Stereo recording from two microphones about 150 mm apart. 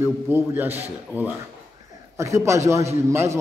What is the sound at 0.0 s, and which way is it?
Speech, 15° right (ahead or behind).